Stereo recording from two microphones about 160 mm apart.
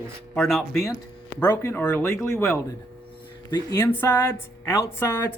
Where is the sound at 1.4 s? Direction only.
15° left (ahead or behind).